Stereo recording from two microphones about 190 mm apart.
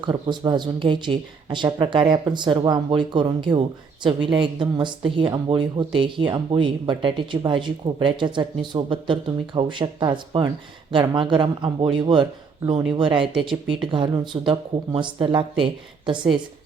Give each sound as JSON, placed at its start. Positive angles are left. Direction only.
{"t": 0.0, "sound": "speech", "side_deg": -25}